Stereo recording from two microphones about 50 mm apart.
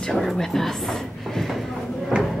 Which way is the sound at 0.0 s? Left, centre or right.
Centre.